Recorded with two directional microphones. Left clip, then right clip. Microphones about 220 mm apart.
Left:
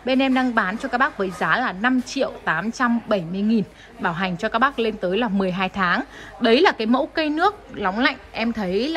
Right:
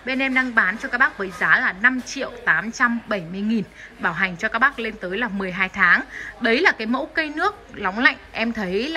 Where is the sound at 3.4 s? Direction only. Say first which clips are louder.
Left 3 dB; 5° left (ahead or behind).